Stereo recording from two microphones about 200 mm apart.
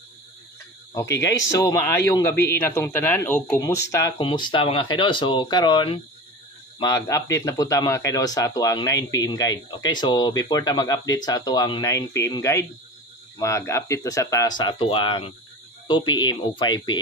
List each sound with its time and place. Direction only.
1.5 s speech: 15° left (ahead or behind)